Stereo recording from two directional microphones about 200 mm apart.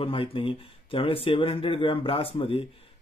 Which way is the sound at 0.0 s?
25° left (ahead or behind).